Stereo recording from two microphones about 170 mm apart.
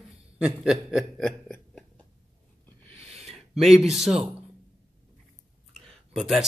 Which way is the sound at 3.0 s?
35° right (ahead or behind).